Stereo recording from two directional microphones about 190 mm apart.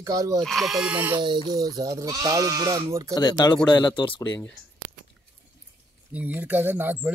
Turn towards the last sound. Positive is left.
turn(degrees=-10)  # may be behind; listen again after turning